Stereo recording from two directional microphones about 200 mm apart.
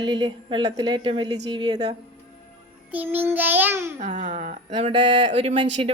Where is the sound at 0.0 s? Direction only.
20° right (ahead or behind).